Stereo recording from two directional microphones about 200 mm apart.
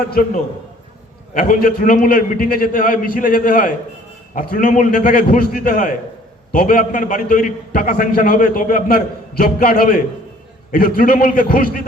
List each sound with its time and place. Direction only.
0.1 s a man's voice: 45° left (ahead or behind)